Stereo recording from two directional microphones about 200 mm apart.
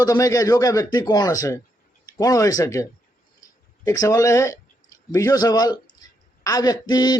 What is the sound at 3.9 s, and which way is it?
Speech, 15° left (ahead or behind).